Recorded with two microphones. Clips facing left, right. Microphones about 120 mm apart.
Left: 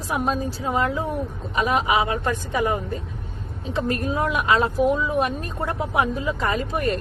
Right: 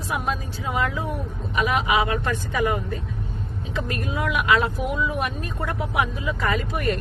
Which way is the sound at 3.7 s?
35° left (ahead or behind).